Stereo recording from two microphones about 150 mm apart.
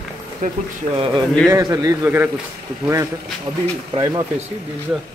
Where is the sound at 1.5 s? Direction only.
25° right (ahead or behind).